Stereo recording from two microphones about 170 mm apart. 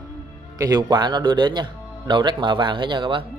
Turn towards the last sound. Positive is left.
turn(degrees=-30)  # may be behind; listen again after turning